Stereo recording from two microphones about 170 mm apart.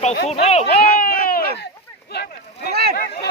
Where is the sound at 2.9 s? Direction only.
55° left (ahead or behind).